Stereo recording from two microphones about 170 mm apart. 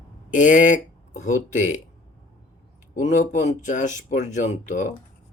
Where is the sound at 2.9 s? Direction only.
45° left (ahead or behind).